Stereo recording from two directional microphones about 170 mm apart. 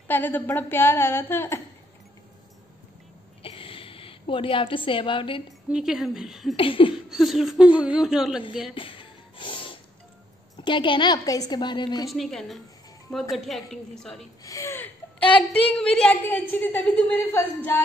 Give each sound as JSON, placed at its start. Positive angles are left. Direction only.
{"t": 0.1, "sound": "a woman's voice", "side_deg": 10}
{"t": 3.4, "sound": "a sound", "side_deg": 30}
{"t": 5.7, "sound": "a woman's voice", "side_deg": -5}
{"t": 6.5, "sound": "a sound", "side_deg": 30}
{"t": 7.1, "sound": "a woman's voice", "side_deg": 0}
{"t": 8.7, "sound": "music", "side_deg": 30}
{"t": 10.6, "sound": "a woman's voice", "side_deg": 30}
{"t": 12.1, "sound": "a woman's voice", "side_deg": 0}
{"t": 14.4, "sound": "a woman's voice", "side_deg": 20}